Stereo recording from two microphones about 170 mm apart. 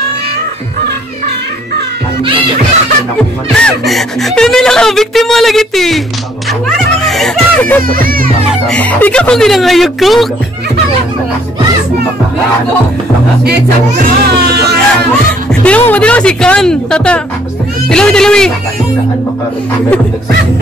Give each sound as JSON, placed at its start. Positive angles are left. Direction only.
{"t": 3.5, "sound": "speech", "side_deg": 5}
{"t": 7.9, "sound": "a child's voice", "side_deg": -55}
{"t": 8.6, "sound": "speech", "side_deg": 10}
{"t": 13.4, "sound": "speech", "side_deg": -65}
{"t": 15.6, "sound": "speech", "side_deg": 10}